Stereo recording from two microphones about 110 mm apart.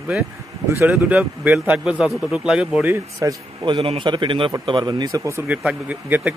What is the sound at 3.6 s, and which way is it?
A man's voice, 50° right (ahead or behind).